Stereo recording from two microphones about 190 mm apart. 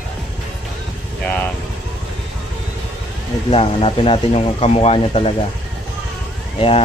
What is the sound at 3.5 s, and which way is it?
Speech, 30° left (ahead or behind).